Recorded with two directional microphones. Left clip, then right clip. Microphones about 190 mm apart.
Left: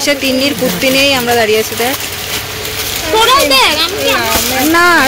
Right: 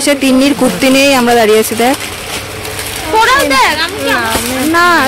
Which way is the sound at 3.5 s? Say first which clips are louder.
Even; 5° left (ahead or behind).